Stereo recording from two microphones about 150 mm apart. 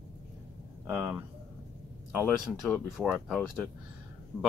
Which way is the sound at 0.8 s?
20° right (ahead or behind).